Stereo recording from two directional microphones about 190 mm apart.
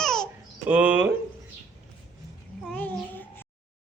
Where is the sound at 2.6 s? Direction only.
5° left (ahead or behind).